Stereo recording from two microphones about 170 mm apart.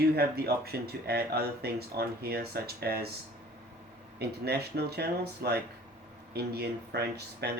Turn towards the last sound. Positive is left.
turn(degrees=-75)  # may be behind; listen again after turning